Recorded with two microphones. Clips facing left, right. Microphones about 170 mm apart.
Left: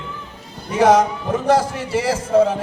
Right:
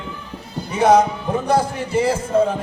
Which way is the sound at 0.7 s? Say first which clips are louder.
Even; 90° left.